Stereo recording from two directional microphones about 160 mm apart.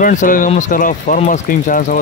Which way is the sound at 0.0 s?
55° left (ahead or behind).